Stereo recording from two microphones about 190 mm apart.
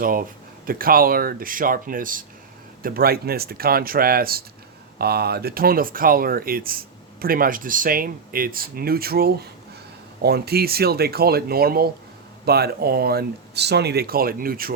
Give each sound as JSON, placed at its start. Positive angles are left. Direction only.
{"t": 0.0, "sound": "speech", "side_deg": -50}